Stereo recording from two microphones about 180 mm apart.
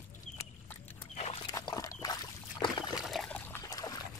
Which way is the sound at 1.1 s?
35° left (ahead or behind).